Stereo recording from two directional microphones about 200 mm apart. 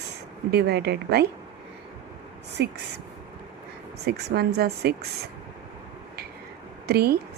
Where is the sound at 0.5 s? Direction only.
55° right (ahead or behind).